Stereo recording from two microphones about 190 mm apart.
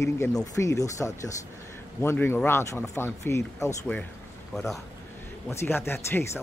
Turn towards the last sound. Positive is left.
turn(degrees=10)  # may be behind; listen again after turning